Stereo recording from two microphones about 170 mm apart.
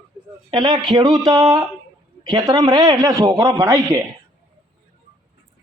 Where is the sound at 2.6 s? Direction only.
20° right (ahead or behind).